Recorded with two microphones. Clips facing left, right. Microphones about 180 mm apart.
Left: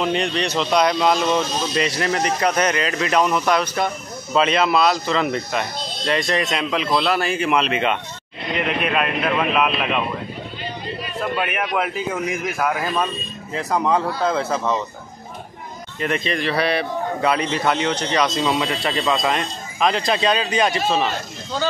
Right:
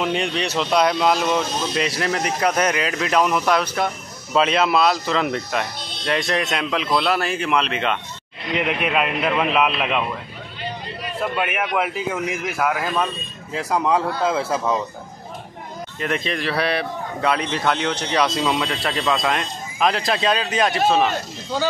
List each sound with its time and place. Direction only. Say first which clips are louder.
0.0 s speech: left 1 dB; 5° right (ahead or behind)
8.5 s speech: even; 10° right (ahead or behind)
11.3 s speech: even; 10° right (ahead or behind)
16.0 s speech: left 2 dB; centre (ahead or behind)